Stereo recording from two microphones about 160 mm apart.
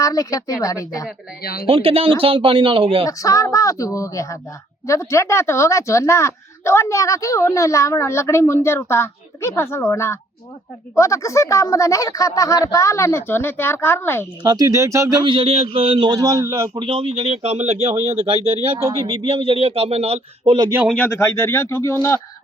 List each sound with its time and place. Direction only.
0.0 s speech: 20° left (ahead or behind)
1.4 s speech: 70° left (ahead or behind)
1.6 s a man's voice: 35° right (ahead or behind)
3.1 s speech: 20° left (ahead or behind)
14.4 s speech: 25° right (ahead or behind)
15.2 s a man's voice: 35° right (ahead or behind)
20.9 s speech: 10° left (ahead or behind)